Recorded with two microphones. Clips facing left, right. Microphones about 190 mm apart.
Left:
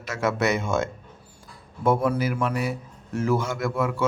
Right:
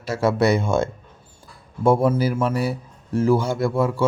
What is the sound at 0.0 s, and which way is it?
A man's voice, 30° right (ahead or behind).